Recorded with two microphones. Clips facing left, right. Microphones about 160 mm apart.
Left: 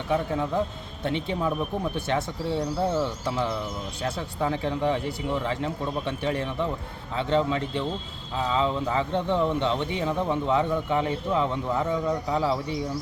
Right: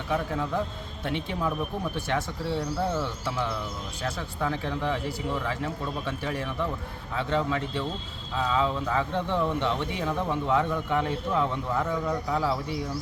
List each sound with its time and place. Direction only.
0.1 s speech: 20° left (ahead or behind)